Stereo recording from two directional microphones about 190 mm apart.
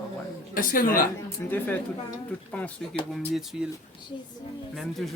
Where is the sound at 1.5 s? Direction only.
10° left (ahead or behind).